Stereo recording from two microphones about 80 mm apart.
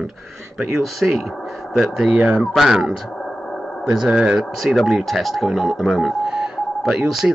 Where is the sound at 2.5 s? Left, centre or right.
Centre.